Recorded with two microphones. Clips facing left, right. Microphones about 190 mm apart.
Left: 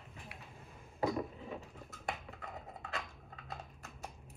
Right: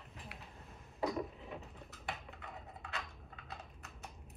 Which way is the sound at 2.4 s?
40° left (ahead or behind).